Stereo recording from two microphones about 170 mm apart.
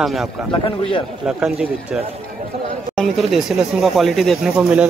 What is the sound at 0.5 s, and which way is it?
Speech, 30° left (ahead or behind).